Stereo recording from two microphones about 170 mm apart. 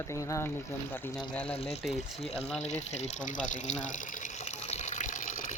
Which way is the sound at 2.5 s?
40° left (ahead or behind).